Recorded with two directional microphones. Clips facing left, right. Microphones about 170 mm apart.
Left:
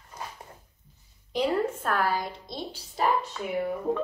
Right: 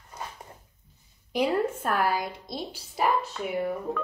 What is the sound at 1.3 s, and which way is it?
A woman's voice, 10° right (ahead or behind).